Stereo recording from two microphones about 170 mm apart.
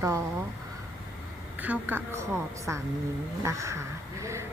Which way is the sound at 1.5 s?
10° right (ahead or behind).